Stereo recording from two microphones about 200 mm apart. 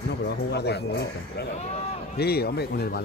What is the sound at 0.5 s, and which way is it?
Speech, 55° left (ahead or behind).